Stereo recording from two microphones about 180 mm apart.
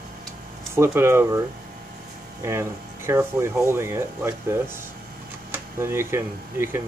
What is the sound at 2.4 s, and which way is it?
Speech, 15° right (ahead or behind).